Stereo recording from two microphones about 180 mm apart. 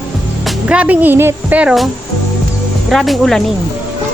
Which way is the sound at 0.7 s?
10° right (ahead or behind).